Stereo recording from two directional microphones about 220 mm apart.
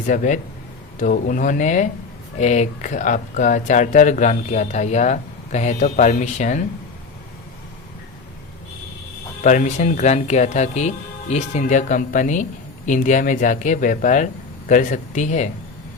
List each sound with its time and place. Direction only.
0.0 s speech: 35° left (ahead or behind)
9.4 s speech: 35° left (ahead or behind)